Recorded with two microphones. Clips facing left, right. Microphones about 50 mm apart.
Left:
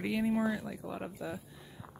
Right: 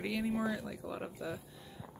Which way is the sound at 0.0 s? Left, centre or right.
Centre.